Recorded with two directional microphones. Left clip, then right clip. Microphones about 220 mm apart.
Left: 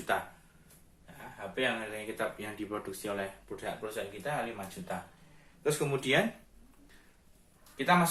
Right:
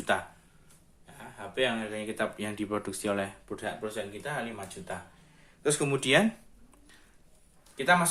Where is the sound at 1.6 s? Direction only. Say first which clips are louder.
Right 3 dB; 50° right (ahead or behind).